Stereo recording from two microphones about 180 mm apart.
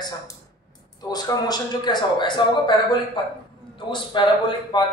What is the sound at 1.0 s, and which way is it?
A man's voice, 20° left (ahead or behind).